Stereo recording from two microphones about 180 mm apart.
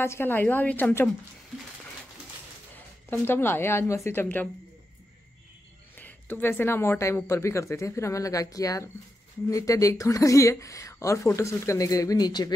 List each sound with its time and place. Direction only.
0.0 s speech: 10° left (ahead or behind)
2.7 s speech: 10° left (ahead or behind)
5.9 s speech: 10° left (ahead or behind)